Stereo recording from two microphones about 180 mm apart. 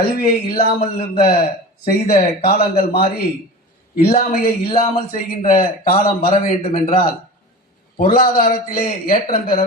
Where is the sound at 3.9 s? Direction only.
35° left (ahead or behind).